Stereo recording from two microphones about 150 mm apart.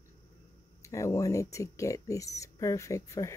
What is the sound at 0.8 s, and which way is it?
Speech, 20° left (ahead or behind).